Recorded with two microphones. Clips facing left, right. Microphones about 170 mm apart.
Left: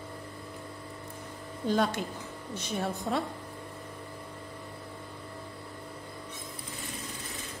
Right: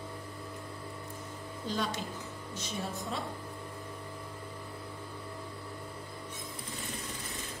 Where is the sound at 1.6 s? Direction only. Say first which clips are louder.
Left 7 dB; 55° left (ahead or behind).